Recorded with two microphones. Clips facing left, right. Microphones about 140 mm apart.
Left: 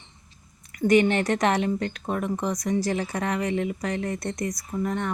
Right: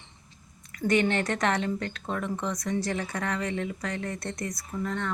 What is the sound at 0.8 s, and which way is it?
Speech, 20° left (ahead or behind).